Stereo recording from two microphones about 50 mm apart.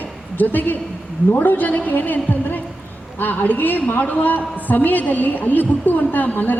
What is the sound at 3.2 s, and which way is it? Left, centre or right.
A man's voice, left.